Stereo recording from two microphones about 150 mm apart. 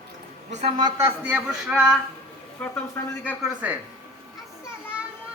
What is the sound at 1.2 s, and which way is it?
A man's voice, 5° right (ahead or behind).